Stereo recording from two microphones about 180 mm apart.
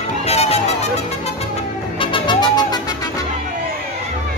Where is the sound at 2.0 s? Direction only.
25° left (ahead or behind).